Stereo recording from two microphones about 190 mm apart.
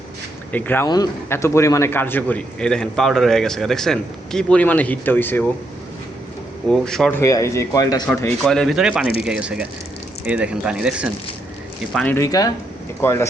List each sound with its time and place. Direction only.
0.5 s speech: 10° left (ahead or behind)
6.7 s speech: 5° left (ahead or behind)
7.2 s speech: 15° left (ahead or behind)
8.0 s speech: 10° left (ahead or behind)
11.9 s speech: 10° left (ahead or behind)